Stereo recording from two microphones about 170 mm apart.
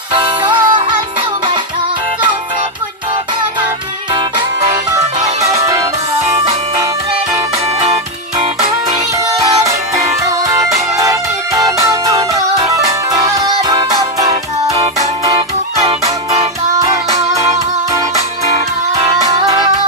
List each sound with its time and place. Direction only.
0.1 s music: 25° right (ahead or behind)
5.5 s music: 20° right (ahead or behind)
10.6 s music: 20° right (ahead or behind)
16.7 s music: 20° right (ahead or behind)